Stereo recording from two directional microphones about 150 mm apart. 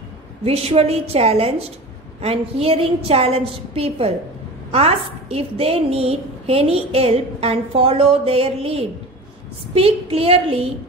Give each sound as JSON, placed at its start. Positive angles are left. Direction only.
{"t": 0.5, "sound": "a woman's voice", "side_deg": -45}